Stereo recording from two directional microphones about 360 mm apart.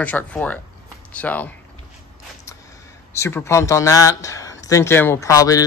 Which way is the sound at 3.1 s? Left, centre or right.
Centre.